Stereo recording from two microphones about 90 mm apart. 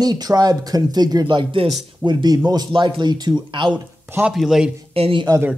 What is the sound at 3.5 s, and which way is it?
Speech, 65° right (ahead or behind).